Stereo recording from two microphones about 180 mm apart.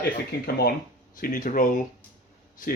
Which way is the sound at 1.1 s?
50° left (ahead or behind).